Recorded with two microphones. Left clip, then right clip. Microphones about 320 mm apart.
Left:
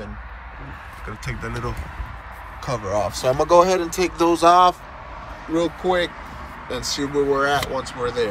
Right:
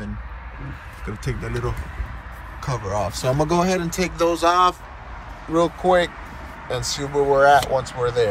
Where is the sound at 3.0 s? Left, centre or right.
Centre.